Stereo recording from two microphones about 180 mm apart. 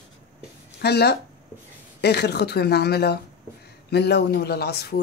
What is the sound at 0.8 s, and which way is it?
Speech, 65° left (ahead or behind).